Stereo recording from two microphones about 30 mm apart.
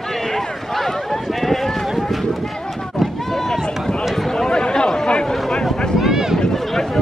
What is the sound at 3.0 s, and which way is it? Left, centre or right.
Run, centre.